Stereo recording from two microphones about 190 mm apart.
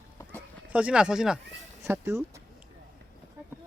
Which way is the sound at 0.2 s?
10° left (ahead or behind).